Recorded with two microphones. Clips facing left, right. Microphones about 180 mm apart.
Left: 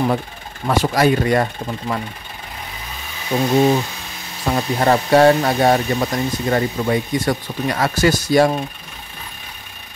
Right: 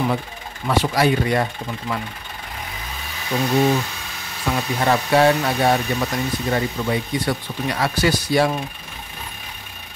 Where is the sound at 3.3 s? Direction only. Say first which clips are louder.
Left 3 dB; 25° left (ahead or behind).